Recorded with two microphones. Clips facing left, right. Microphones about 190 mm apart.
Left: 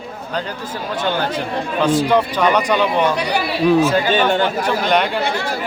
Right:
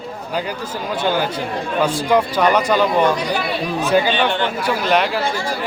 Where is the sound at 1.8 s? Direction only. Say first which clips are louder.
Left 2 dB; 10° right (ahead or behind).